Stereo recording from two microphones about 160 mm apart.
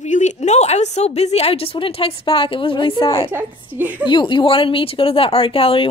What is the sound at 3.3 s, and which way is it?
Speech, 10° right (ahead or behind).